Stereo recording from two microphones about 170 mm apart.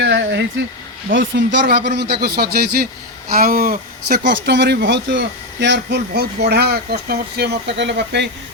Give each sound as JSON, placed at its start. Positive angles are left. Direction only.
{"t": 0.0, "sound": "speech", "side_deg": -90}